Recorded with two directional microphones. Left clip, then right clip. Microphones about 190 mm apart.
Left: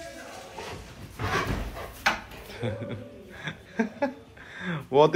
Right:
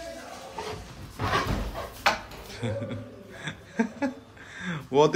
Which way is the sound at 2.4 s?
10° right (ahead or behind).